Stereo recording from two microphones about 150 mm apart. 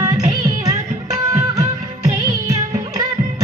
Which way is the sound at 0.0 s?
25° right (ahead or behind).